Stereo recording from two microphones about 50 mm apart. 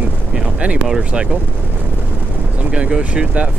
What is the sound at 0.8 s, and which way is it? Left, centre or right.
Speech, centre.